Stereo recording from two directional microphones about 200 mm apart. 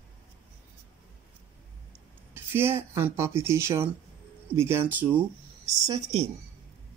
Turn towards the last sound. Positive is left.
turn(degrees=-30)  # may be behind; listen again after turning